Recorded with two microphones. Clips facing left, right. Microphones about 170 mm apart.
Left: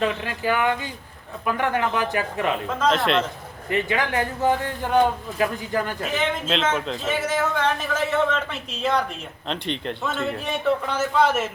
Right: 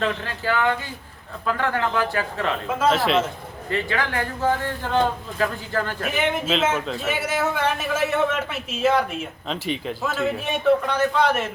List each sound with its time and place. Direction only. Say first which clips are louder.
0.0 s a man's voice: left 1 dB; 15° left (ahead or behind)
2.6 s speech: right 3 dB; 5° right (ahead or behind)
3.7 s a man's voice: left 2 dB; 20° left (ahead or behind)
6.4 s speech: right 1 dB; 5° right (ahead or behind)